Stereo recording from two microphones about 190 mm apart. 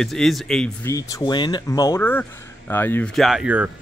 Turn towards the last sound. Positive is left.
turn(degrees=-10)  # may be behind; listen again after turning